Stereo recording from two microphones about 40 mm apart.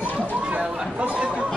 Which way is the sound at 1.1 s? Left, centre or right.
Right.